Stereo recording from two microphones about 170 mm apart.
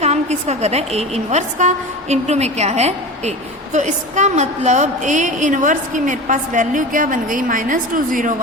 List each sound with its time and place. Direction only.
0.0 s a woman's voice: 40° right (ahead or behind)